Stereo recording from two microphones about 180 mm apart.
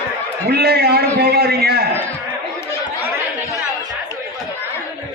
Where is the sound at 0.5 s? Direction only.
60° right (ahead or behind).